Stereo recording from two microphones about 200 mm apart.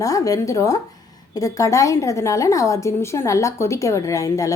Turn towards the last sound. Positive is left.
turn(degrees=15)  # may be behind; listen again after turning